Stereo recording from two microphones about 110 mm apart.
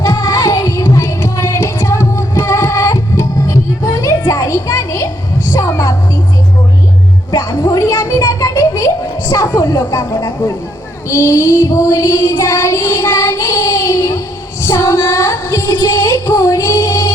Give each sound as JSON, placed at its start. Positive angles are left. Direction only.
{"t": 0.0, "sound": "music", "side_deg": 30}
{"t": 7.3, "sound": "music", "side_deg": 35}
{"t": 10.1, "sound": "child singing", "side_deg": 30}
{"t": 14.6, "sound": "female singing", "side_deg": 25}